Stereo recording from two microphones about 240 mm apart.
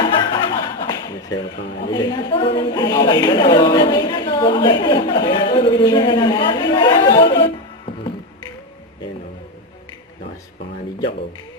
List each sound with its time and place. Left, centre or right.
0.0 s chuckle: centre
1.9 s a woman's voice: centre